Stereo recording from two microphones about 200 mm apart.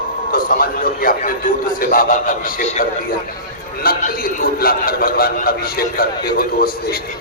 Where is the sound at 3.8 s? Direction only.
50° left (ahead or behind).